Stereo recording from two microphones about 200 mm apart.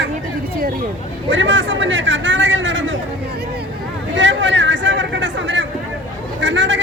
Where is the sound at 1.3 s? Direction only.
70° right (ahead or behind).